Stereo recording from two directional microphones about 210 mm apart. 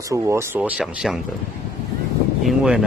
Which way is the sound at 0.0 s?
15° right (ahead or behind).